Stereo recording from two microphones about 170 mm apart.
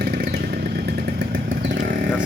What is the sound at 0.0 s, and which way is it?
Motorcycle, 70° right (ahead or behind).